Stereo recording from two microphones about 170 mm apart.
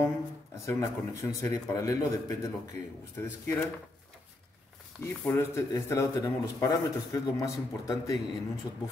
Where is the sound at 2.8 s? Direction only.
10° left (ahead or behind).